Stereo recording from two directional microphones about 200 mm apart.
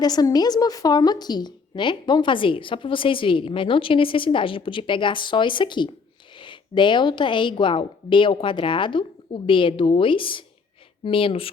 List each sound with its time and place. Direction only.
0.0 s a woman's voice: 20° left (ahead or behind)